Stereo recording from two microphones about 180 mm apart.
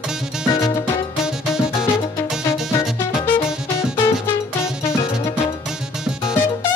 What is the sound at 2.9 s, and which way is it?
Music, 10° left (ahead or behind).